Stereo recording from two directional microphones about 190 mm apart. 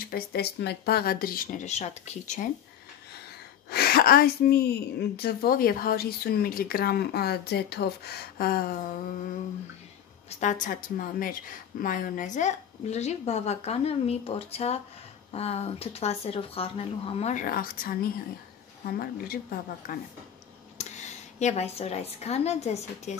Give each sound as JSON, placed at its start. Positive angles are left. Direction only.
{"t": 0.0, "sound": "speech", "side_deg": 55}
{"t": 3.7, "sound": "speech", "side_deg": 50}
{"t": 10.4, "sound": "a woman's voice", "side_deg": 45}
{"t": 18.9, "sound": "speech", "side_deg": 50}
{"t": 20.7, "sound": "a woman's voice", "side_deg": 35}